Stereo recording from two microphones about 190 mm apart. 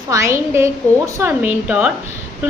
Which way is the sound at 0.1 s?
15° right (ahead or behind).